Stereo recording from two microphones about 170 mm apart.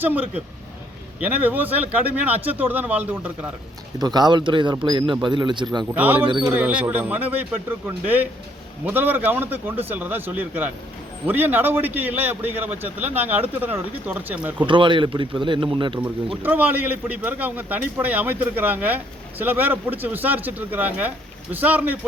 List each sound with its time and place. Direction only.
0.0 s a man's voice: 10° right (ahead or behind)
3.9 s speech: 25° right (ahead or behind)
6.4 s a man's voice: 10° right (ahead or behind)
14.7 s speech: 30° right (ahead or behind)
16.4 s a man's voice: 10° right (ahead or behind)